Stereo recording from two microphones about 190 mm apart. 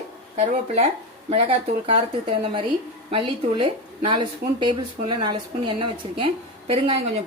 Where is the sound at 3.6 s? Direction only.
25° right (ahead or behind).